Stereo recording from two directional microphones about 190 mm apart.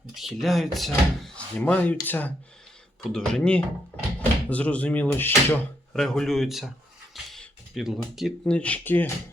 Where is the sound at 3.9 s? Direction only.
10° left (ahead or behind).